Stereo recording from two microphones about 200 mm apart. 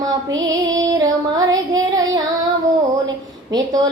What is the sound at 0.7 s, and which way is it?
Female singing, 15° right (ahead or behind).